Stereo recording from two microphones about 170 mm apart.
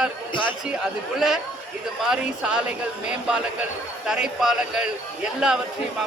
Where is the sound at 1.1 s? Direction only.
Centre (ahead or behind).